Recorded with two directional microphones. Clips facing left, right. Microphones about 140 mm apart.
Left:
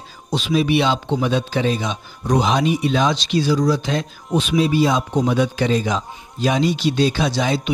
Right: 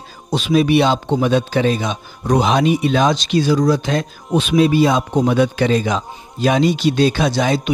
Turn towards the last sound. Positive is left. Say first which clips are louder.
# right 3 dB
turn(degrees=-55)  # may be behind; listen again after turning